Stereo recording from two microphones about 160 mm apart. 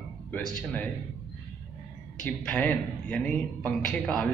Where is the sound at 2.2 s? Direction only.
10° left (ahead or behind).